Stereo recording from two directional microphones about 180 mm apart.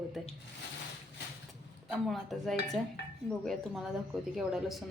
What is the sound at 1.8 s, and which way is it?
Speech, centre (ahead or behind).